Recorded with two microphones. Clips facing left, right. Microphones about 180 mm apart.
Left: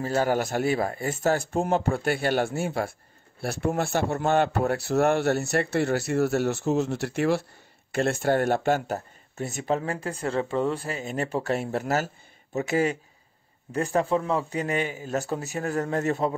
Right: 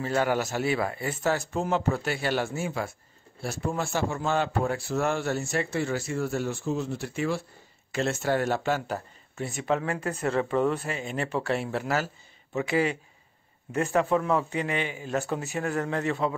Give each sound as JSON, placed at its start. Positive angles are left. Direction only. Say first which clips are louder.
{"t": 0.0, "sound": "speech", "louder": "left 2 dB", "side_deg": 40}
{"t": 0.4, "sound": "a man's voice", "louder": "left 2 dB", "side_deg": 50}
{"t": 7.9, "sound": "speech", "louder": "left 3 dB", "side_deg": 55}
{"t": 13.7, "sound": "speech", "louder": "even", "side_deg": 35}